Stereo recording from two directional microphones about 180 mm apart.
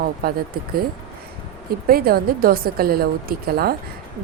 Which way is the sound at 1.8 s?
55° right (ahead or behind).